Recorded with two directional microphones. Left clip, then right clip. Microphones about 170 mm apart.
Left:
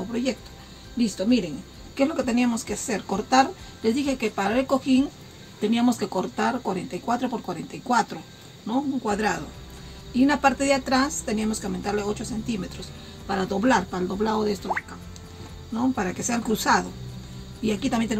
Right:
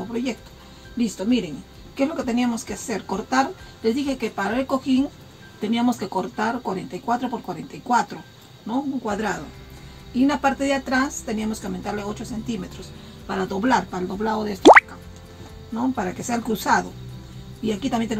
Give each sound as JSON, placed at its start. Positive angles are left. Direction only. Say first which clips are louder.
{"t": 0.9, "sound": "speech", "louder": "even", "side_deg": 15}
{"t": 15.7, "sound": "speech", "louder": "right 1 dB", "side_deg": 15}